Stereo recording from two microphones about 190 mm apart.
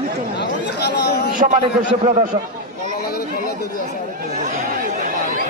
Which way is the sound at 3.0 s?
55° left (ahead or behind).